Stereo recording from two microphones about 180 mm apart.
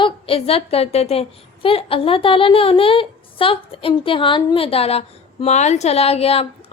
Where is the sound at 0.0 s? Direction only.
30° left (ahead or behind).